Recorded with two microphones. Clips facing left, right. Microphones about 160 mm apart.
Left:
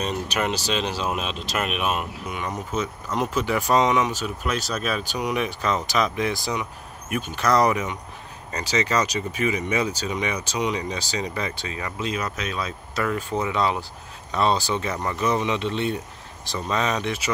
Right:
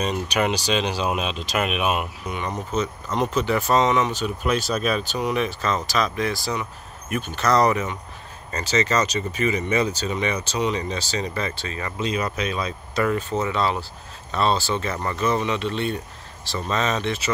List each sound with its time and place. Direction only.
0.0 s speech: centre (ahead or behind)
2.2 s speech: 5° left (ahead or behind)
5.0 s speech: 10° left (ahead or behind)
11.8 s speech: centre (ahead or behind)
13.3 s speech: 15° left (ahead or behind)